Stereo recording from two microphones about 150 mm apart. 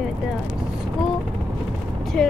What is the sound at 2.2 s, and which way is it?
Speech, 5° left (ahead or behind).